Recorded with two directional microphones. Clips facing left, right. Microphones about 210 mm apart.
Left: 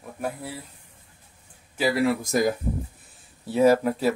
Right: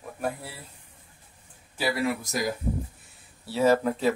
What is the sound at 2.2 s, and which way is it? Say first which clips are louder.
Speech: left 6 dB; 50° left (ahead or behind).